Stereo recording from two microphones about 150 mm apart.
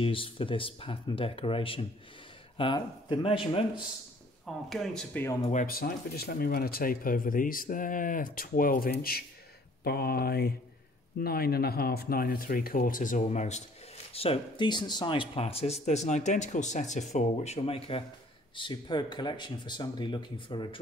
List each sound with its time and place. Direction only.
0.0 s speech: 35° left (ahead or behind)
4.6 s speech: 5° left (ahead or behind)
5.5 s speech: 65° left (ahead or behind)
9.8 s speech: 90° left; by 13.7 s 50° left (ahead or behind)
14.1 s speech: 40° left (ahead or behind)